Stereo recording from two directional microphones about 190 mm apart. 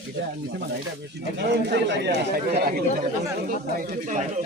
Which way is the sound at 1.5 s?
65° right (ahead or behind).